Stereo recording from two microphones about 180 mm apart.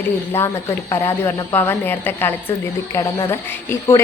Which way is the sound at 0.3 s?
15° left (ahead or behind).